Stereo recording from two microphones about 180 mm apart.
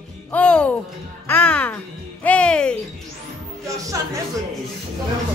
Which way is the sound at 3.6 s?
20° right (ahead or behind).